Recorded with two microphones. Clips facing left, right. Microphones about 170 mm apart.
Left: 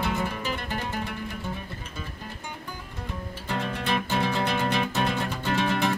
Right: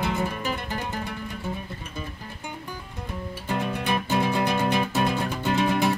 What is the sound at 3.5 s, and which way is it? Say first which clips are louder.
Music: right 2 dB; 10° right (ahead or behind).